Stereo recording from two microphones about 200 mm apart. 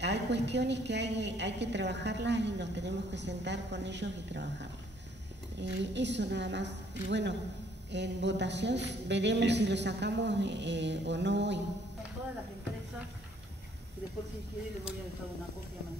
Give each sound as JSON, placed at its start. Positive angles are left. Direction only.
{"t": 0.0, "sound": "a woman's voice", "side_deg": -60}